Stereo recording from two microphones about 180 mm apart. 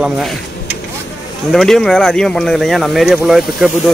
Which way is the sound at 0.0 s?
Centre (ahead or behind).